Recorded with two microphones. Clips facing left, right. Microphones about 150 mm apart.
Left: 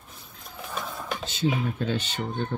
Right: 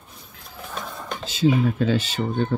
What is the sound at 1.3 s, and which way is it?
Speech, 90° right.